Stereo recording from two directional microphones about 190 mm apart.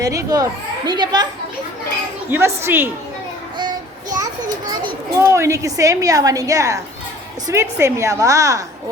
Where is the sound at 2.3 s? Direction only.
10° right (ahead or behind).